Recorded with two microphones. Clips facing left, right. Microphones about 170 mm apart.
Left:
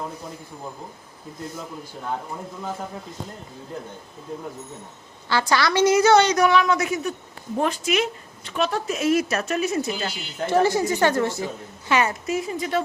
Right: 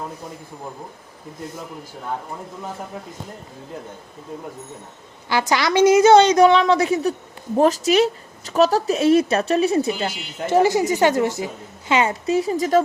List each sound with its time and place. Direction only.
5.3 s a woman's voice: 15° right (ahead or behind); by 9.9 s 30° right (ahead or behind)
10.0 s a woman's voice: 20° right (ahead or behind)
12.2 s speech: 35° right (ahead or behind)